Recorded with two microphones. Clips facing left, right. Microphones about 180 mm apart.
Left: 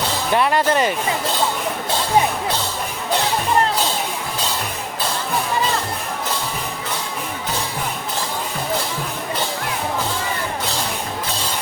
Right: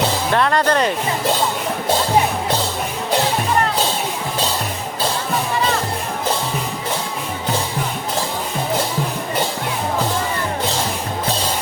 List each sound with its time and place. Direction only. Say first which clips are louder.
0.3 s speech: even; 5° left (ahead or behind)